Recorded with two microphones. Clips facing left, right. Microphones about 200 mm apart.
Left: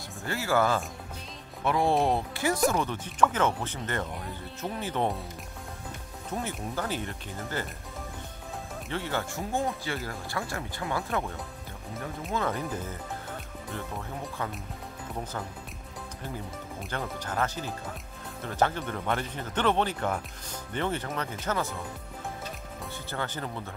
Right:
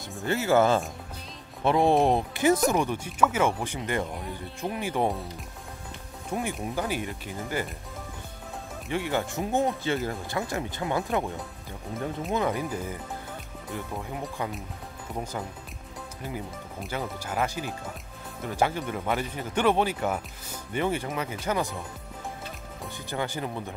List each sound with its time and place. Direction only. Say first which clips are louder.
0.2 s speech: right 4 dB; 20° right (ahead or behind)
6.3 s speech: right 3 dB; 15° right (ahead or behind)
8.8 s speech: right 4 dB; 15° right (ahead or behind)
16.8 s speech: right 2 dB; 5° right (ahead or behind)
23.0 s speech: right 4 dB; 15° right (ahead or behind)